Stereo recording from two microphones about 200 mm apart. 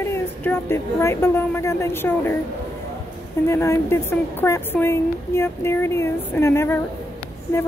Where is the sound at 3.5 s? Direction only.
15° left (ahead or behind).